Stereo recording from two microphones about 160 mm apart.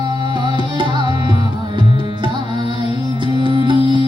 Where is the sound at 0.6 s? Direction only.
30° right (ahead or behind).